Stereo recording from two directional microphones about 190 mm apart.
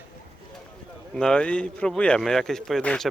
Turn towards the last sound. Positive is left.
turn(degrees=5)  # may be behind; listen again after turning